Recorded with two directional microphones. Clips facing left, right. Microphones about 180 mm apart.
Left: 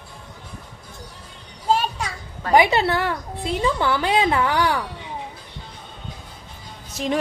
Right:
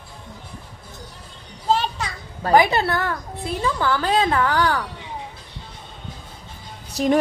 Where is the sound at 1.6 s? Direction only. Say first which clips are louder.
Even; 10° left (ahead or behind).